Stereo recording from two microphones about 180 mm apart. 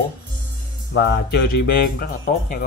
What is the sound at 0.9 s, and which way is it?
Speech, 70° left (ahead or behind).